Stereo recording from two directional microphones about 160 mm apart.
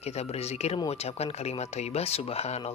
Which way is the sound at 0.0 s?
40° left (ahead or behind).